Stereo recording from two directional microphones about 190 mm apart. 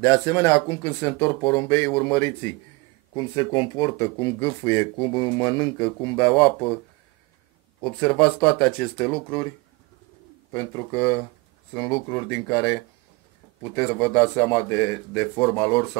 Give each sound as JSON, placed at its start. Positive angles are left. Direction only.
{"t": 0.0, "sound": "speech", "side_deg": 15}
{"t": 3.2, "sound": "speech", "side_deg": 20}
{"t": 7.8, "sound": "speech", "side_deg": 5}
{"t": 10.5, "sound": "speech", "side_deg": 10}